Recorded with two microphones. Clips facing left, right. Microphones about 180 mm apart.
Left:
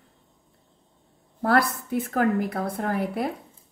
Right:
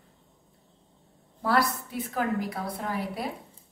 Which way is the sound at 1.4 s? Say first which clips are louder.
Left 3 dB; 50° left (ahead or behind).